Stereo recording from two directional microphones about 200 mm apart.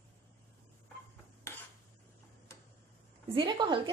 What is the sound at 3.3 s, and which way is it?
Speech, 25° right (ahead or behind).